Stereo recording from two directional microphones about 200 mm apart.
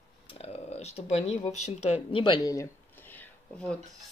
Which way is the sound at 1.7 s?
30° left (ahead or behind).